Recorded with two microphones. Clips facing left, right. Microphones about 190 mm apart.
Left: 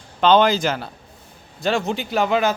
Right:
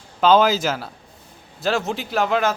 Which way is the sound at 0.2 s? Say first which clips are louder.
Even; 5° right (ahead or behind).